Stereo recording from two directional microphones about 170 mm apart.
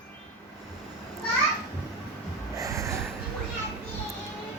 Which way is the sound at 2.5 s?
20° right (ahead or behind).